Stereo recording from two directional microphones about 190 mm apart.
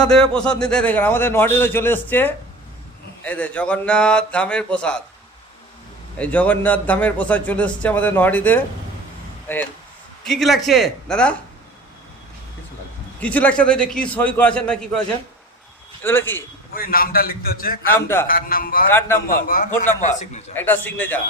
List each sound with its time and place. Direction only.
0.0 s a man's voice: 5° left (ahead or behind)
6.1 s a man's voice: 5° left (ahead or behind)
10.2 s speech: centre (ahead or behind)
13.1 s a man's voice: 10° left (ahead or behind)
16.0 s a man's voice: 10° left (ahead or behind)
16.7 s a man's voice: 50° left (ahead or behind)
18.9 s a man's voice: 10° left (ahead or behind)
19.3 s a man's voice: 45° left (ahead or behind)
20.6 s a man's voice: 10° left (ahead or behind)